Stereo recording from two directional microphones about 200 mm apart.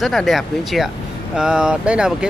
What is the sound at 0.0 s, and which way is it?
Speech, centre (ahead or behind).